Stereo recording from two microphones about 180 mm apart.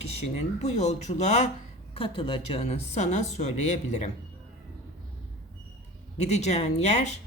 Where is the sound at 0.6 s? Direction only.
40° left (ahead or behind).